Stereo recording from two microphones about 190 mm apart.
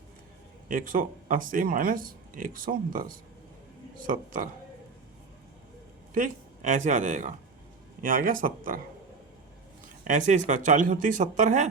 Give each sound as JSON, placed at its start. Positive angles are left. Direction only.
{"t": 0.7, "sound": "speech", "side_deg": -45}
{"t": 6.1, "sound": "speech", "side_deg": -40}
{"t": 10.1, "sound": "speech", "side_deg": -40}